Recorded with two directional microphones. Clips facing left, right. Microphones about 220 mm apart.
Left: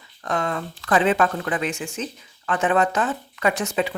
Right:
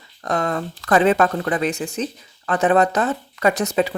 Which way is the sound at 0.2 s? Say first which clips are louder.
Right 3 dB; 40° right (ahead or behind).